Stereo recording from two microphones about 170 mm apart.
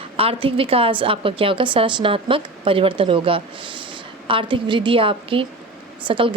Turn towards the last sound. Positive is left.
turn(degrees=-30)  # may be behind; listen again after turning